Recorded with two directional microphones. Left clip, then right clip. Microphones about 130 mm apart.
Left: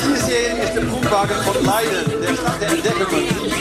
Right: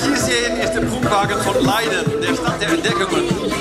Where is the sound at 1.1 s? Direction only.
40° right (ahead or behind).